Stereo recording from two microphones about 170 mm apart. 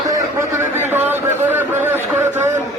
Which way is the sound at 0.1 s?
15° right (ahead or behind).